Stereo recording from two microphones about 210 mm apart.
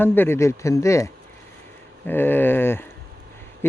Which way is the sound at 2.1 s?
10° left (ahead or behind).